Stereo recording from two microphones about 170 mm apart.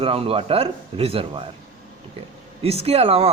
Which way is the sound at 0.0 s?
35° right (ahead or behind).